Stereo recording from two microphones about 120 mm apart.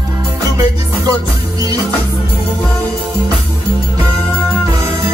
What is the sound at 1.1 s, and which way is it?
Music, 30° right (ahead or behind).